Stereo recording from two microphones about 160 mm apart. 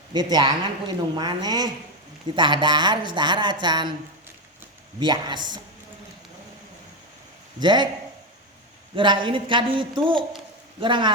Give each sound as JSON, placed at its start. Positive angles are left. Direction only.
{"t": 0.1, "sound": "speech", "side_deg": -25}
{"t": 4.9, "sound": "speech", "side_deg": -25}
{"t": 7.6, "sound": "speech", "side_deg": -30}
{"t": 9.0, "sound": "a woman's voice", "side_deg": -30}